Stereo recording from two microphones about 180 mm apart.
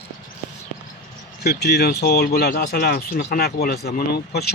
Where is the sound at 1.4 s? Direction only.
65° left (ahead or behind).